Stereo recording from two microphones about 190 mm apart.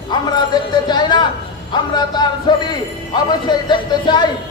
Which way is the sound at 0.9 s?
25° left (ahead or behind).